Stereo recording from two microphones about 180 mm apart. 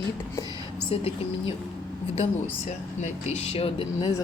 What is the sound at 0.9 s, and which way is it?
Speech, 35° left (ahead or behind).